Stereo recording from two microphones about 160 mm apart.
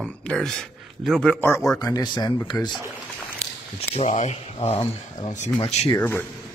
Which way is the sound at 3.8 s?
45° left (ahead or behind).